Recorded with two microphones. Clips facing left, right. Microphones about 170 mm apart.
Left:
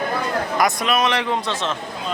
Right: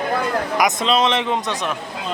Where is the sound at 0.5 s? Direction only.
20° right (ahead or behind).